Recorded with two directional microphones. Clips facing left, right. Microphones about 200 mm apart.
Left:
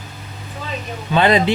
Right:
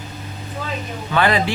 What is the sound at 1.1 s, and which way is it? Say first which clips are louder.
Speech: left 3 dB; 20° left (ahead or behind).